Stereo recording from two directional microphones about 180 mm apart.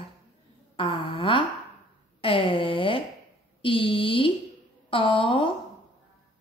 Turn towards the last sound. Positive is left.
turn(degrees=30)  # may be behind; listen again after turning